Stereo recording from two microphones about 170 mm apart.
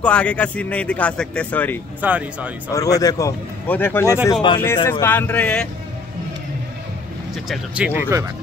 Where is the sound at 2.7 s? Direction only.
20° left (ahead or behind).